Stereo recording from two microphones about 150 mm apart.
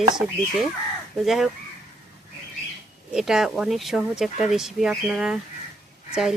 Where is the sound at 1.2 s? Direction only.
Centre (ahead or behind).